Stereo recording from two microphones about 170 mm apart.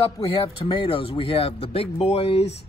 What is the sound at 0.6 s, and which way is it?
Speech, 30° left (ahead or behind).